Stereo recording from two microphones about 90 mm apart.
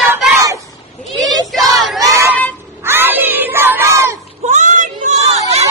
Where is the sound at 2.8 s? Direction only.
25° right (ahead or behind).